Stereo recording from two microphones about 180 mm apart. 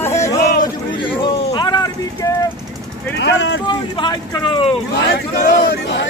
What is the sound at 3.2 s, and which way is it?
Speech, 75° left (ahead or behind).